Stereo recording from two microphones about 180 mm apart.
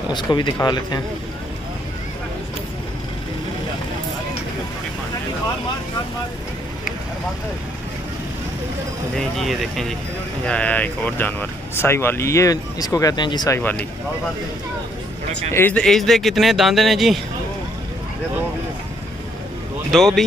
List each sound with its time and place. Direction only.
0.1 s speech: 25° left (ahead or behind)
9.4 s speech: centre (ahead or behind); by 13.6 s 25° left (ahead or behind)
13.6 s speech: 10° left (ahead or behind)
15.5 s speech: 10° left (ahead or behind)
19.9 s speech: centre (ahead or behind)